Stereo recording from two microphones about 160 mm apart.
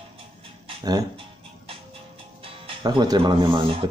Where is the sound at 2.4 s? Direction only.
30° right (ahead or behind).